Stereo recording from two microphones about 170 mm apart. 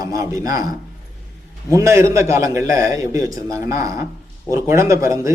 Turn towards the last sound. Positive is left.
turn(degrees=-15)  # may be behind; listen again after turning